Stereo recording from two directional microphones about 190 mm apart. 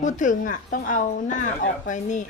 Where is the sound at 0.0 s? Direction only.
40° left (ahead or behind).